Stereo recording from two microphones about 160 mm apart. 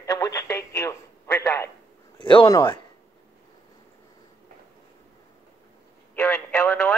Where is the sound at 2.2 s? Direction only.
30° left (ahead or behind).